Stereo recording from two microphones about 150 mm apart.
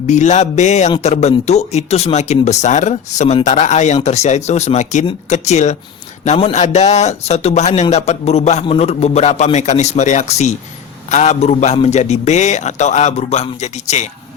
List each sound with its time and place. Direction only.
0.1 s a man's voice: 50° left (ahead or behind)